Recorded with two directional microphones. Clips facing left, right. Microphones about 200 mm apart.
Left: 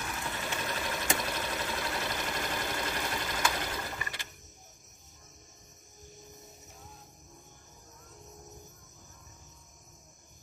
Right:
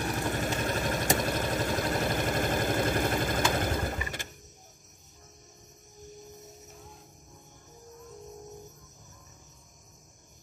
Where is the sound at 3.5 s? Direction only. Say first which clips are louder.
Right 7 dB; 50° right (ahead or behind).